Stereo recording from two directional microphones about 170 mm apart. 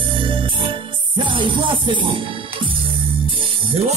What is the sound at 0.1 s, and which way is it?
Music, 30° right (ahead or behind).